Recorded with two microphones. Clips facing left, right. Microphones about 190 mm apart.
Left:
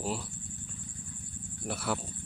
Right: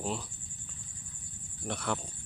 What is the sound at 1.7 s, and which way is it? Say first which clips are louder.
Speech: left 1 dB; 5° left (ahead or behind).